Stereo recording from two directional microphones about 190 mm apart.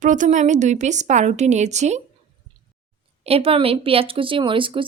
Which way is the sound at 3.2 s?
30° right (ahead or behind).